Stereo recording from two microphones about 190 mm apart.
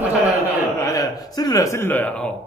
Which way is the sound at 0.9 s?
20° left (ahead or behind).